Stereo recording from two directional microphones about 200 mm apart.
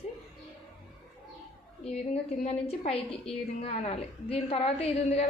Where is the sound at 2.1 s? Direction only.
30° left (ahead or behind).